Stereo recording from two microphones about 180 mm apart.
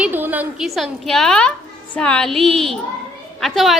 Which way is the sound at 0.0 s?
10° right (ahead or behind).